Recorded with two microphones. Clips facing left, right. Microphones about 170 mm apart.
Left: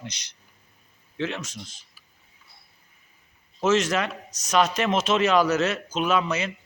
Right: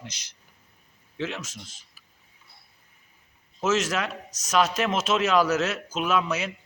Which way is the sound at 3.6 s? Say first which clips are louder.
Left 3 dB; 5° right (ahead or behind).